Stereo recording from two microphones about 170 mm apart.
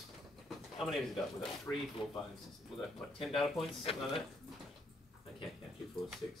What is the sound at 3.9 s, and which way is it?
Speech, 35° left (ahead or behind).